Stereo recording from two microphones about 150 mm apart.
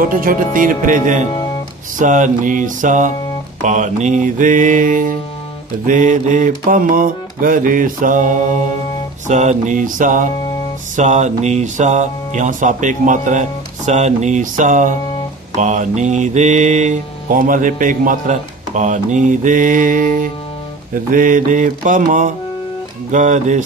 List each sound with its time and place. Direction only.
0.0 s mantra: 70° right (ahead or behind)
23.1 s speech: 55° right (ahead or behind)